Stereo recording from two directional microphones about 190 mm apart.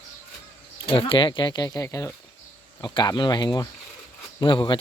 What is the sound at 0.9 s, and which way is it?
Speech, 30° left (ahead or behind).